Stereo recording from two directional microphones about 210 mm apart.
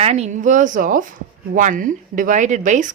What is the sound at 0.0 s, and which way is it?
A woman's voice, 30° right (ahead or behind).